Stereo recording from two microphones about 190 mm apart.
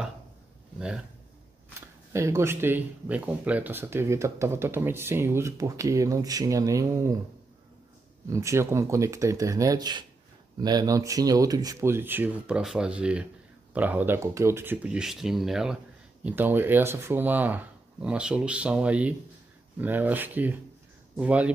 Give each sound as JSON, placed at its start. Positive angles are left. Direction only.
{"t": 0.7, "sound": "speech", "side_deg": -5}
{"t": 2.1, "sound": "speech", "side_deg": -15}
{"t": 8.3, "sound": "speech", "side_deg": -15}